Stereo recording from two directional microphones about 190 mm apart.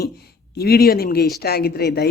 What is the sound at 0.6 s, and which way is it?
Speech, 55° left (ahead or behind).